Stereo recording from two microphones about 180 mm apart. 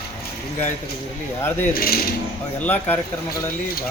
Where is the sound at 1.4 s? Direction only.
15° left (ahead or behind).